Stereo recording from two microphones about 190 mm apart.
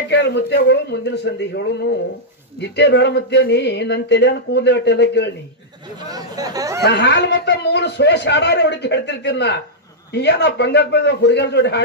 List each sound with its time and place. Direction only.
0.1 s speech: 65° left (ahead or behind)
6.0 s speech: 20° right (ahead or behind)
6.8 s speech: 65° left (ahead or behind)